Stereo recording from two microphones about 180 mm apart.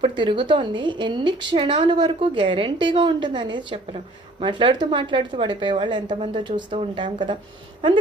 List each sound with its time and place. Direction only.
0.0 s a woman's voice: 25° right (ahead or behind)